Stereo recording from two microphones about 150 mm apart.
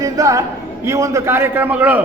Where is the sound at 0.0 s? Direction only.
20° right (ahead or behind).